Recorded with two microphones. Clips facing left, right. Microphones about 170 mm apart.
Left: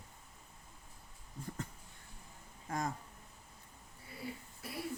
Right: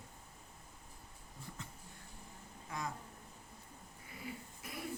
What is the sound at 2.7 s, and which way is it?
Speech, 45° left (ahead or behind).